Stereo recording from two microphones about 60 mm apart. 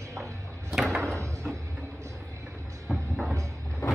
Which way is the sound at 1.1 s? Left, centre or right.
Right.